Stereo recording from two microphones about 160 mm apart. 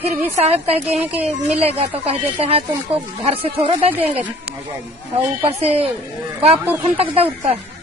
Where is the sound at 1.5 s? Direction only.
40° right (ahead or behind).